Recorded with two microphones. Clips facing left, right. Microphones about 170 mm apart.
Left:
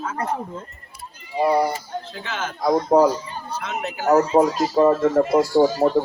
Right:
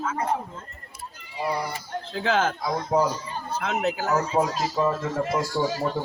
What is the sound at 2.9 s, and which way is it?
Speech, 50° left (ahead or behind).